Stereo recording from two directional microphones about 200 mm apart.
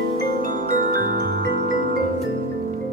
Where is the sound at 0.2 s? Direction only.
45° right (ahead or behind).